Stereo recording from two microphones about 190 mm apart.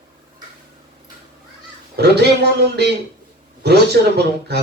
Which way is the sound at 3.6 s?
60° right (ahead or behind).